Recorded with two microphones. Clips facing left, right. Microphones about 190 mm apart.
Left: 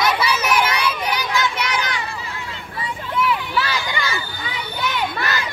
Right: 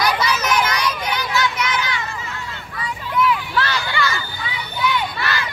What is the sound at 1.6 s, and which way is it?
Children playing, 35° left (ahead or behind).